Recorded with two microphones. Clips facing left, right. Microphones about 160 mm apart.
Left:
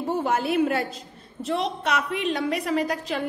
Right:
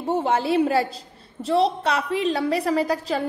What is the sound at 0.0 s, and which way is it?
A woman's voice, 25° right (ahead or behind).